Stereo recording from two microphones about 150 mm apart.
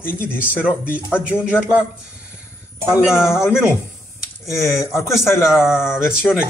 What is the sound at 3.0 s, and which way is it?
Speech, 5° right (ahead or behind).